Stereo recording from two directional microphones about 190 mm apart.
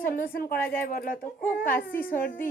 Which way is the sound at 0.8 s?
50° left (ahead or behind).